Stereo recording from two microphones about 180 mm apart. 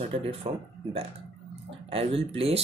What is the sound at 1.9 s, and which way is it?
Speech, 30° right (ahead or behind).